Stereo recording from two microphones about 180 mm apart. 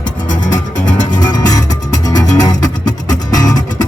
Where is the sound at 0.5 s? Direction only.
45° left (ahead or behind).